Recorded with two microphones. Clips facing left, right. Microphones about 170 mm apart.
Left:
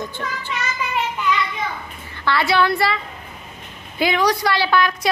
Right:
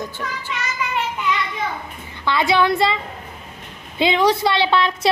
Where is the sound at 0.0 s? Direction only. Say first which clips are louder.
Even; 10° right (ahead or behind).